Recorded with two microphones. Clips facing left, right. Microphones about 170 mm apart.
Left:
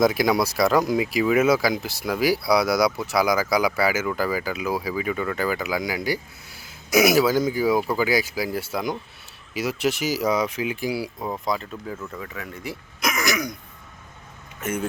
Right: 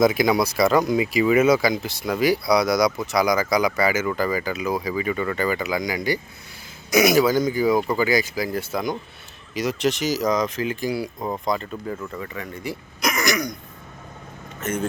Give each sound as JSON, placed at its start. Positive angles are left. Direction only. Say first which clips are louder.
{"t": 0.0, "sound": "speech", "louder": "right 1 dB", "side_deg": 0}
{"t": 14.6, "sound": "speech", "louder": "right 1 dB", "side_deg": 10}